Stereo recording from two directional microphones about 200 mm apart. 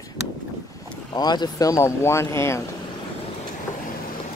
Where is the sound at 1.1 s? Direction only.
20° left (ahead or behind).